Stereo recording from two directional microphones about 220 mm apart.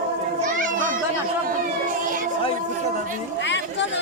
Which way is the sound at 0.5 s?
35° right (ahead or behind).